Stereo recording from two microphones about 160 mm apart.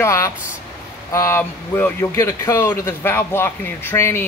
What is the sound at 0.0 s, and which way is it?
Speech, 20° left (ahead or behind).